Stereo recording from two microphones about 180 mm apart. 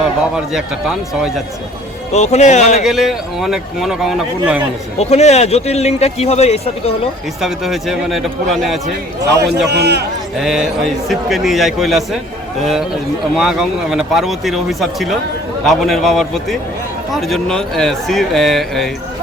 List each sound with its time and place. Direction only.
0.0 s speech: 5° right (ahead or behind)
2.1 s speech: 40° left (ahead or behind)
2.8 s speech: centre (ahead or behind)
4.9 s speech: 35° left (ahead or behind)
7.4 s speech: centre (ahead or behind)
9.6 s a man's voice: 65° right (ahead or behind)
10.3 s speech: centre (ahead or behind)
13.3 s speech: centre (ahead or behind)